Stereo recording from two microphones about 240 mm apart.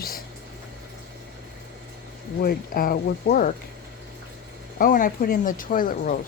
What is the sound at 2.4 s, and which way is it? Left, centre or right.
Speech, left.